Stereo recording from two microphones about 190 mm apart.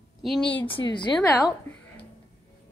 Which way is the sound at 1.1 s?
10° left (ahead or behind).